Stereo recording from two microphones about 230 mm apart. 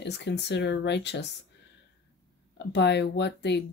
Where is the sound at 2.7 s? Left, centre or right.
Left.